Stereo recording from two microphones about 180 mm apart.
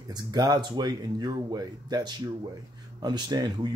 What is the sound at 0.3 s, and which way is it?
Speech, 25° right (ahead or behind).